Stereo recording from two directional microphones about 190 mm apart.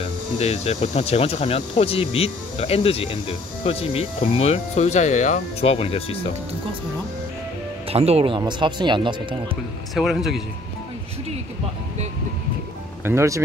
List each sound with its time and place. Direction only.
0.4 s speech: 35° left (ahead or behind)
7.9 s speech: 30° right (ahead or behind)
9.9 s speech: centre (ahead or behind)
13.0 s speech: 15° right (ahead or behind)